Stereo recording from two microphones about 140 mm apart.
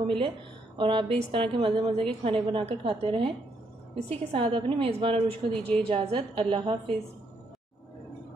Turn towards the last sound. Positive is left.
turn(degrees=-40)  # may be behind; listen again after turning